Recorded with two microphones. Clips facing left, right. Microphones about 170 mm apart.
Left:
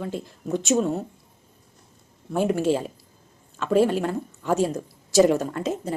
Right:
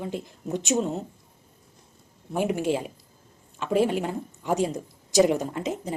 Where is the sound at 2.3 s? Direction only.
15° right (ahead or behind).